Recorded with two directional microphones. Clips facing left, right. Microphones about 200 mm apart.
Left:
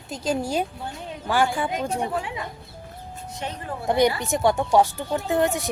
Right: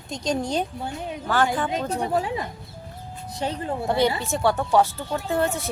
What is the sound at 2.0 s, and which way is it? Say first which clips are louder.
Speech: right 3 dB; 35° right (ahead or behind).